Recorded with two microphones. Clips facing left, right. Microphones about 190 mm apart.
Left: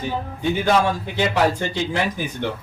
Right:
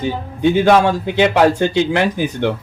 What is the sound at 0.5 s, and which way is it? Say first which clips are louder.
Speech: right 6 dB; 70° right (ahead or behind).